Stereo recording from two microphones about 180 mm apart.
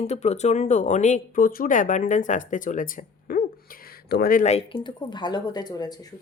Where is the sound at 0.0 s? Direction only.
35° left (ahead or behind).